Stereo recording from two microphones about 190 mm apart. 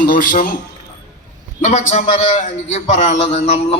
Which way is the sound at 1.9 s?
35° left (ahead or behind).